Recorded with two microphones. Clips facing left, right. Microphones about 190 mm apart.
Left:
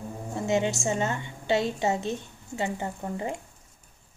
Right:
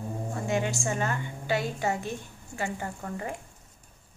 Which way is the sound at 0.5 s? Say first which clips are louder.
Left 4 dB; 25° left (ahead or behind).